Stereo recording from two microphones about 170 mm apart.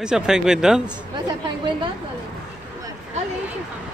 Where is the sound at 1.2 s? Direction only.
30° right (ahead or behind).